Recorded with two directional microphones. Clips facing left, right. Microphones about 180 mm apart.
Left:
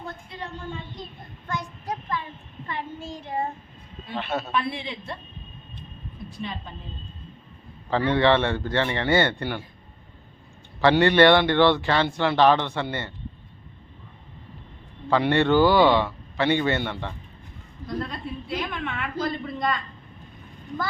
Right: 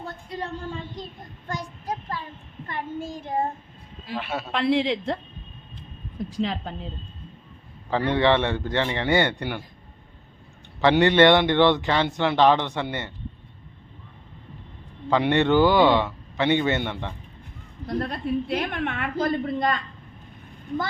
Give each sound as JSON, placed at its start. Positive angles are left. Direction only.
{"t": 1.5, "sound": "child singing", "side_deg": -35}
{"t": 2.6, "sound": "child singing", "side_deg": -50}
{"t": 4.1, "sound": "a man's voice", "side_deg": -10}
{"t": 4.5, "sound": "speech", "side_deg": -90}
{"t": 6.3, "sound": "speech", "side_deg": -90}
{"t": 7.9, "sound": "a man's voice", "side_deg": -15}
{"t": 10.8, "sound": "a man's voice", "side_deg": -15}
{"t": 15.1, "sound": "a man's voice", "side_deg": -20}
{"t": 17.8, "sound": "a woman's voice", "side_deg": -55}